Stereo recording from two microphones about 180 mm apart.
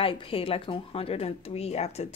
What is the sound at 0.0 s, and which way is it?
Speech, 30° left (ahead or behind).